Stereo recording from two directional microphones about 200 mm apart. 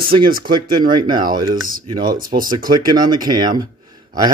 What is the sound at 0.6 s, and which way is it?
A man's voice, 20° right (ahead or behind).